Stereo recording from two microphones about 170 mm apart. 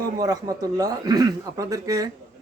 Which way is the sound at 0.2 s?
20° right (ahead or behind).